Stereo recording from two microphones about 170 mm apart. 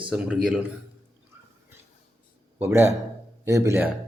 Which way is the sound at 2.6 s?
15° right (ahead or behind).